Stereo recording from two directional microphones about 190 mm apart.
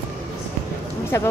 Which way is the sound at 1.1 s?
15° left (ahead or behind).